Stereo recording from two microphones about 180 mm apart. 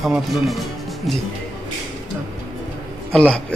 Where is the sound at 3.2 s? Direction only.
5° left (ahead or behind).